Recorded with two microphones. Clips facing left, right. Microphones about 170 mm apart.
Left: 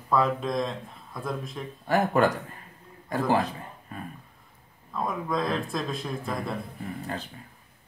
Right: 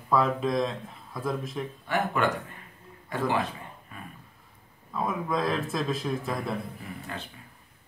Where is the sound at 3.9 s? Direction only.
40° left (ahead or behind).